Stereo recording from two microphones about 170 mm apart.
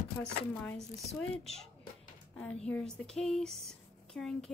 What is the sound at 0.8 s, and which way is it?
Speech, 20° right (ahead or behind).